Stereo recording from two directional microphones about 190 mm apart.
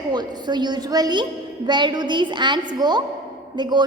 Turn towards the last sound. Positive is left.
turn(degrees=-25)  # may be behind; listen again after turning